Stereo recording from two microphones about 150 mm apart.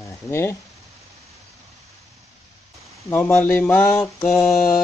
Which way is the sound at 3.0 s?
15° left (ahead or behind).